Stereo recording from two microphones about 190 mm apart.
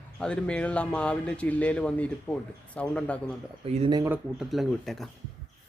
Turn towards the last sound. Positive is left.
turn(degrees=0)  # may be behind; listen again after turning